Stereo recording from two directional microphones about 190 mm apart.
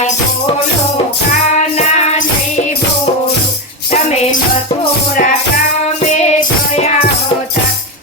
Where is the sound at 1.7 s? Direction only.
35° left (ahead or behind).